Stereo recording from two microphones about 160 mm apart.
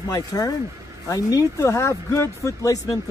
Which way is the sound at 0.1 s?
20° left (ahead or behind).